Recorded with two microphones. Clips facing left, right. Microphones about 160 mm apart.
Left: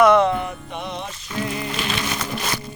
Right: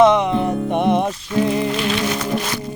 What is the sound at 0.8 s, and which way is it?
Music, 55° right (ahead or behind).